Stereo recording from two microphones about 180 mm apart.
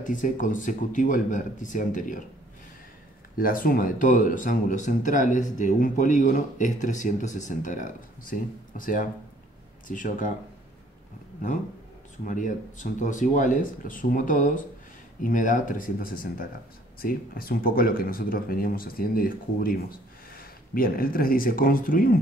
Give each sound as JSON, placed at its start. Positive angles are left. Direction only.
{"t": 0.0, "sound": "speech", "side_deg": 45}
{"t": 3.3, "sound": "speech", "side_deg": 50}
{"t": 12.3, "sound": "speech", "side_deg": 45}